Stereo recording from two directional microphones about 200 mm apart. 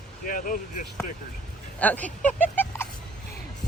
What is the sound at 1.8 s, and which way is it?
Speech, 10° left (ahead or behind).